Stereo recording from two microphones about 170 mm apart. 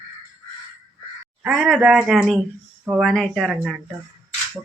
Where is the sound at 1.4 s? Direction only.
Centre (ahead or behind).